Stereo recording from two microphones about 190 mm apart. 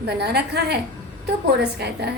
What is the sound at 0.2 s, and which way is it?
A woman's voice, 60° right (ahead or behind).